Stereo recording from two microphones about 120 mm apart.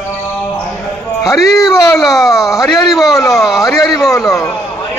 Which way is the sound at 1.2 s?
25° left (ahead or behind).